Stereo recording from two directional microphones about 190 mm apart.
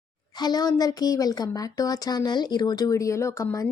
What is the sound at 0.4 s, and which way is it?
Speech, 20° left (ahead or behind).